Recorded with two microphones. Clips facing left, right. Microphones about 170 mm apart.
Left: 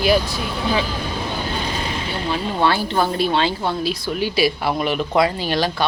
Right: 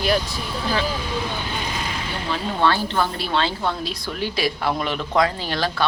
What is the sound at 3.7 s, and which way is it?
Speech, 5° left (ahead or behind).